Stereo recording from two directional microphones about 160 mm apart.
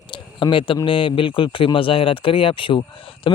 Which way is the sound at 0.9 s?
30° left (ahead or behind).